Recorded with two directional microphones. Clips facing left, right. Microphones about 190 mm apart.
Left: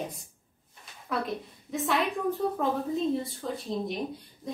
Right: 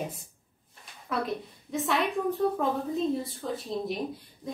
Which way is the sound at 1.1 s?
Centre (ahead or behind).